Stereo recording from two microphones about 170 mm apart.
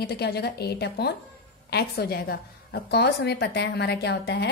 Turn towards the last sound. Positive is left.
turn(degrees=75)  # may be behind; listen again after turning